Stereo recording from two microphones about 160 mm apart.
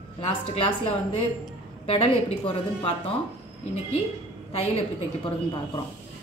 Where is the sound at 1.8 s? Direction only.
35° left (ahead or behind).